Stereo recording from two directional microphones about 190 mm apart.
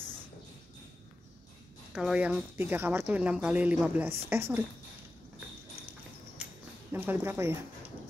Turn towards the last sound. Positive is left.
turn(degrees=-10)  # may be behind; listen again after turning